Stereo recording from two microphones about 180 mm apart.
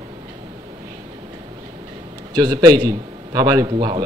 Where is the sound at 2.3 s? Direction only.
20° right (ahead or behind).